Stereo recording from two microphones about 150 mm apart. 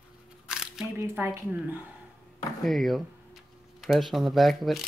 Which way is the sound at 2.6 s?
Centre (ahead or behind).